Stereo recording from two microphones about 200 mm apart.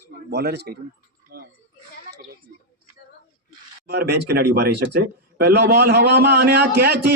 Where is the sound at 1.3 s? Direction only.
50° right (ahead or behind).